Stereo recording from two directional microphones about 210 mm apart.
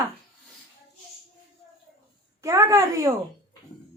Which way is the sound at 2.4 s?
15° right (ahead or behind).